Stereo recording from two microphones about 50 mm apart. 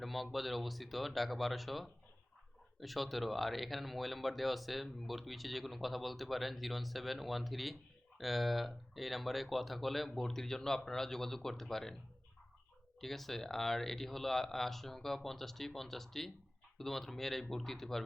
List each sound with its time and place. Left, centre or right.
0.0 s speech: centre
13.0 s speech: centre